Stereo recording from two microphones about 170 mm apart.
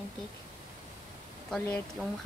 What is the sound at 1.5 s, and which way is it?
Speech, 5° left (ahead or behind).